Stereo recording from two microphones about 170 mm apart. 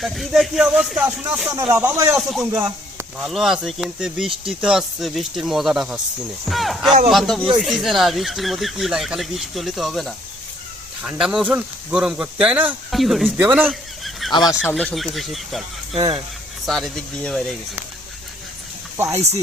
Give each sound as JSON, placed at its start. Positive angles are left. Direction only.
{"t": 0.0, "sound": "speech", "side_deg": 0}
{"t": 2.1, "sound": "speech", "side_deg": 0}
{"t": 13.7, "sound": "fowl", "side_deg": 0}
{"t": 14.7, "sound": "speech", "side_deg": 5}
{"t": 16.0, "sound": "speech", "side_deg": -35}
{"t": 16.6, "sound": "speech", "side_deg": 0}
{"t": 18.9, "sound": "speech", "side_deg": -15}